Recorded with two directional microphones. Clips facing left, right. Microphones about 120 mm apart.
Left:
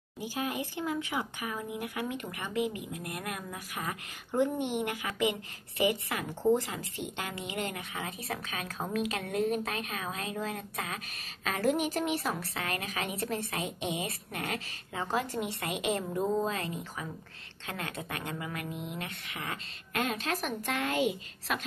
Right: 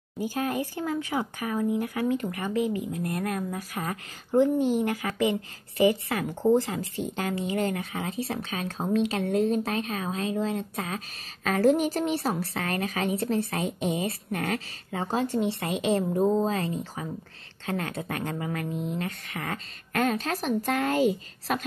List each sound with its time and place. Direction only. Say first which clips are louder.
0.2 s a woman's voice: right 6 dB; 45° right (ahead or behind); by 11.0 s 30° right (ahead or behind)
11.4 s a woman's voice: right 7 dB; 40° right (ahead or behind)